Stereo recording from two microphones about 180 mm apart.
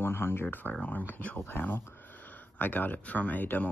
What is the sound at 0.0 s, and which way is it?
Speech, 10° left (ahead or behind).